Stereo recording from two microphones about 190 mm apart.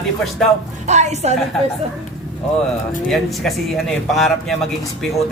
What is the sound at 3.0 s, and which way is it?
Speech, centre (ahead or behind).